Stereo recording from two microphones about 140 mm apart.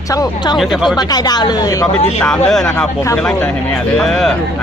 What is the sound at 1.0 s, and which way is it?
Speech, 30° left (ahead or behind).